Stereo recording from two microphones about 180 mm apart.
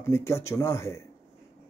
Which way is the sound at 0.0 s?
15° left (ahead or behind).